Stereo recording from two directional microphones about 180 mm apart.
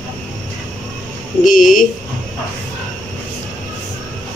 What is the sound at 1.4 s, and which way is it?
Speech, 50° left (ahead or behind).